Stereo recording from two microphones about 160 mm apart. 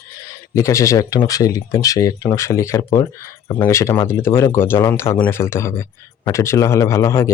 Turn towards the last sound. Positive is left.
turn(degrees=20)  # may be behind; listen again after turning